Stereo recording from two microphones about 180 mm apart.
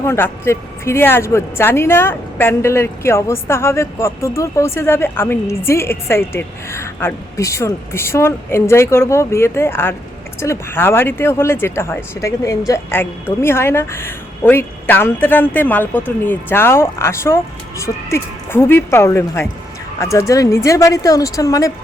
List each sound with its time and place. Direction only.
0.0 s a woman's voice: 15° left (ahead or behind)